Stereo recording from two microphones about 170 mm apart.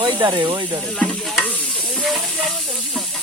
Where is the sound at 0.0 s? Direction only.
25° right (ahead or behind).